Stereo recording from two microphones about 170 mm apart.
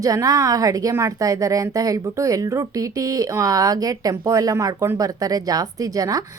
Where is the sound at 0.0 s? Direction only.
20° right (ahead or behind).